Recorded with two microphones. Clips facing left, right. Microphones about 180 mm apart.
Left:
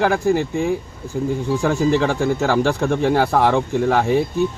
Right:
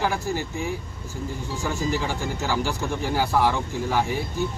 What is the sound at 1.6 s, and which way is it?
Speech, 60° left (ahead or behind).